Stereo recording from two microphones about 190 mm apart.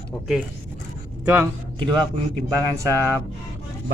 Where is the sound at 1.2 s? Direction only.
10° right (ahead or behind).